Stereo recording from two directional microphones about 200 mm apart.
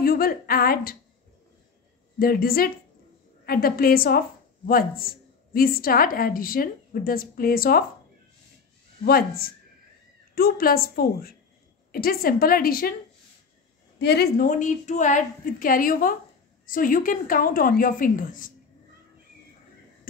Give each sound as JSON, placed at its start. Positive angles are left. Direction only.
{"t": 0.0, "sound": "a woman's voice", "side_deg": 50}
{"t": 2.1, "sound": "a woman's voice", "side_deg": 45}
{"t": 9.0, "sound": "a woman's voice", "side_deg": 50}
{"t": 13.9, "sound": "a woman's voice", "side_deg": 55}